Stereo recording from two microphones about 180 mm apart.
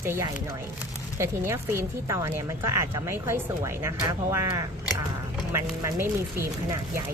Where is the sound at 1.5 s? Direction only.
15° right (ahead or behind).